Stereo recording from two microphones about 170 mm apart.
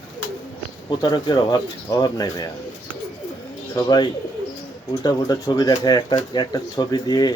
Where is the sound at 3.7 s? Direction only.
25° left (ahead or behind).